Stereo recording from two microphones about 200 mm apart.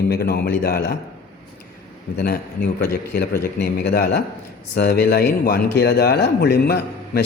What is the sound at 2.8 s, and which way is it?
Speech, 55° left (ahead or behind).